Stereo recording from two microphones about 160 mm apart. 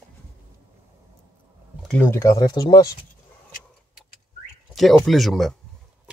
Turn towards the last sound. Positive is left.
turn(degrees=0)  # may be behind; listen again after turning